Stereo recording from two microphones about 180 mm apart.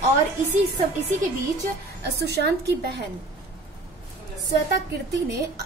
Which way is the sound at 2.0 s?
65° right (ahead or behind).